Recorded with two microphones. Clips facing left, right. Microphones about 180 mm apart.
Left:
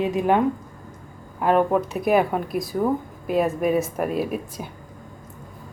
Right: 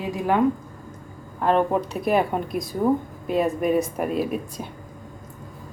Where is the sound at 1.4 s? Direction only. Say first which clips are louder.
Left 1 dB; 5° left (ahead or behind).